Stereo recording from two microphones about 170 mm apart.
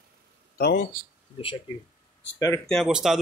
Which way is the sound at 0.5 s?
65° left (ahead or behind).